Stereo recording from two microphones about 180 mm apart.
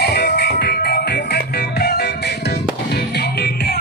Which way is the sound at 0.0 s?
60° left (ahead or behind).